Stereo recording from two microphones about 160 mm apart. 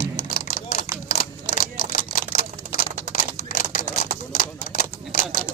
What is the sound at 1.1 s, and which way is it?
Camera, 65° left (ahead or behind).